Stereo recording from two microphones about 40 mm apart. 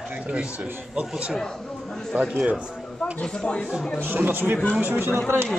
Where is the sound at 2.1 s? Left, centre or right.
Right.